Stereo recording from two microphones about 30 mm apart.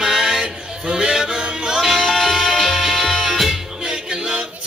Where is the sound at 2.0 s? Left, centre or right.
Centre.